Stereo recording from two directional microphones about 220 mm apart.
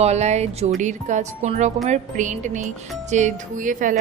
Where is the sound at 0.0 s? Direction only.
30° right (ahead or behind).